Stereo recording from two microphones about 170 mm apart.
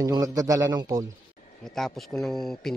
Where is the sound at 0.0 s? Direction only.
20° right (ahead or behind).